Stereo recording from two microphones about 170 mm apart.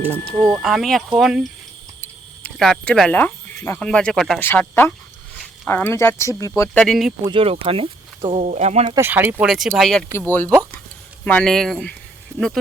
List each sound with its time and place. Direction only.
0.4 s speech: centre (ahead or behind); by 6.5 s 15° left (ahead or behind)
6.7 s speech: centre (ahead or behind)
7.3 s speech: 35° right (ahead or behind)
8.3 s speech: 45° right (ahead or behind)
9.0 s speech: 10° right (ahead or behind)